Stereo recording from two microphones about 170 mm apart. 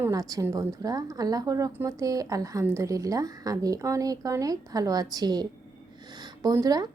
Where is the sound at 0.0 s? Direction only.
20° right (ahead or behind).